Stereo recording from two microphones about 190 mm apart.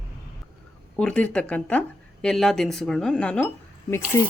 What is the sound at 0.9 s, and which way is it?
Speech, 5° left (ahead or behind).